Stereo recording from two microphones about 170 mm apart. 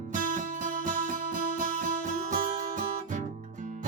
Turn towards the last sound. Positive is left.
turn(degrees=-50)  # may be behind; listen again after turning